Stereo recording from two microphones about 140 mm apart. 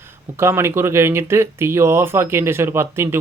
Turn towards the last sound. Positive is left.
turn(degrees=-20)  # may be behind; listen again after turning